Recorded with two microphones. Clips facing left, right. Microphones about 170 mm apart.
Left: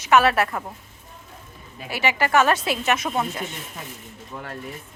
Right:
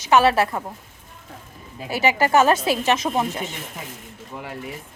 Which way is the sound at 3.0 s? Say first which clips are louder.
Right 2 dB; 25° right (ahead or behind).